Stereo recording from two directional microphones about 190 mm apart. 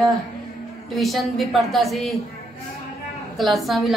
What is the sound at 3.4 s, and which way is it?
Speech, centre (ahead or behind).